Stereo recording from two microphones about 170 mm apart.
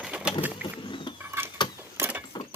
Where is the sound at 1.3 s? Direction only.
15° right (ahead or behind).